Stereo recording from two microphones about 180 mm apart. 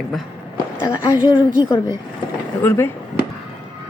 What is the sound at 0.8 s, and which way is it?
Speech, 20° left (ahead or behind).